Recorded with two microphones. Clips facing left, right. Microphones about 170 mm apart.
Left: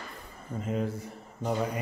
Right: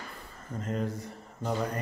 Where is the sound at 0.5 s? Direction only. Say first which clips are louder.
Left 1 dB; 5° left (ahead or behind).